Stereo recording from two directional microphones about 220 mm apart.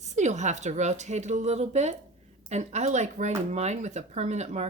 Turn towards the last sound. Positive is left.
turn(degrees=-30)  # may be behind; listen again after turning